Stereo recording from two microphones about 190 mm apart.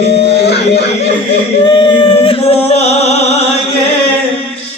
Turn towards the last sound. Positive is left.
turn(degrees=35)  # may be behind; listen again after turning